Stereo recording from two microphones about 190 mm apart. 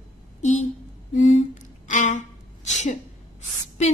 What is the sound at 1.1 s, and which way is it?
Humming, 40° left (ahead or behind).